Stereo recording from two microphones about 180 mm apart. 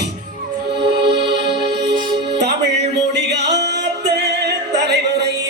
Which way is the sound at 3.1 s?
70° right (ahead or behind).